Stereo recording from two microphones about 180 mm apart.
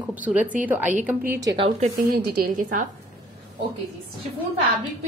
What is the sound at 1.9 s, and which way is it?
Speech, 55° right (ahead or behind).